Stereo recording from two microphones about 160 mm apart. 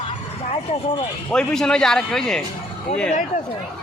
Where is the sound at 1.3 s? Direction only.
5° left (ahead or behind).